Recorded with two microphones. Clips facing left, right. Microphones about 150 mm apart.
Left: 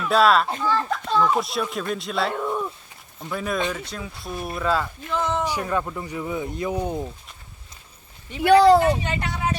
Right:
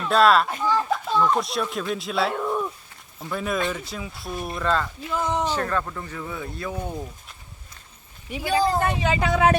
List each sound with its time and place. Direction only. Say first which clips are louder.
0.1 s speech: even; centre (ahead or behind)
0.6 s children playing: even; 15° right (ahead or behind)
0.9 s speech: even; 5° right (ahead or behind)
5.0 s speech: even; 10° right (ahead or behind)
5.5 s speech: even; 15° left (ahead or behind)
8.4 s speech: left 9 dB; 75° left (ahead or behind)
9.0 s speech: right 7 dB; 90° right